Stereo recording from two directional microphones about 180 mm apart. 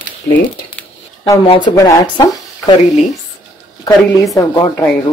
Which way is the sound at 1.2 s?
25° left (ahead or behind).